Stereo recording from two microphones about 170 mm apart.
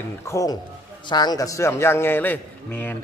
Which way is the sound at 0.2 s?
15° left (ahead or behind).